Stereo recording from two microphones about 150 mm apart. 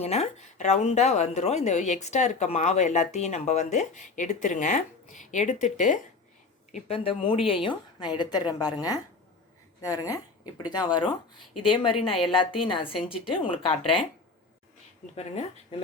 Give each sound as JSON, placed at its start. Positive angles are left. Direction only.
{"t": 0.0, "sound": "a woman's voice", "side_deg": 45}
{"t": 15.1, "sound": "a woman's voice", "side_deg": 45}